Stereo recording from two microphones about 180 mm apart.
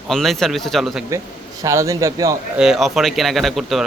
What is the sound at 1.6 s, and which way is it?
Speech, 15° right (ahead or behind).